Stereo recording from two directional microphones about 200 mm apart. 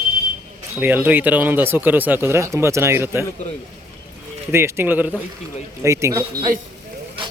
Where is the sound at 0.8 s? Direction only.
10° right (ahead or behind).